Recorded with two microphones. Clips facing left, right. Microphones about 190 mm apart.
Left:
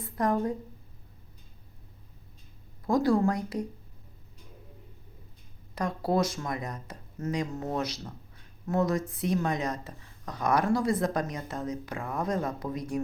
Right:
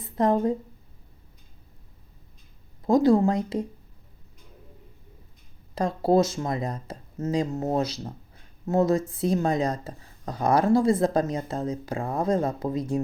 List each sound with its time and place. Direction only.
0.0 s speech: 25° right (ahead or behind)
2.8 s speech: 20° right (ahead or behind)
5.7 s speech: 30° right (ahead or behind)